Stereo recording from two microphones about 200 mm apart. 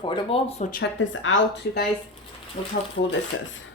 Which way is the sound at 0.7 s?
60° left (ahead or behind).